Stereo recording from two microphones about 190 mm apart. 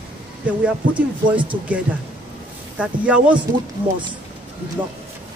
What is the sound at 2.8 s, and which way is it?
Speech, 5° right (ahead or behind).